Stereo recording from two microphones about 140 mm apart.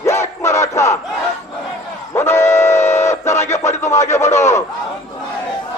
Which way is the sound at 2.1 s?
20° left (ahead or behind).